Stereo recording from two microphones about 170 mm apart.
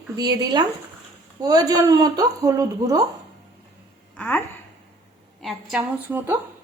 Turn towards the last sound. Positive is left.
turn(degrees=-10)  # may be behind; listen again after turning